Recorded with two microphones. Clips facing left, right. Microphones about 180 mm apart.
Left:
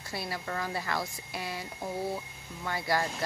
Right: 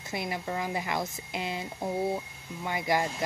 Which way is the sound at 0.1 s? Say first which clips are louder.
Right 3 dB; 20° right (ahead or behind).